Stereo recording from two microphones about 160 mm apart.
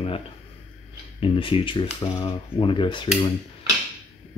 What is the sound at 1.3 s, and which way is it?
Speech, 35° left (ahead or behind).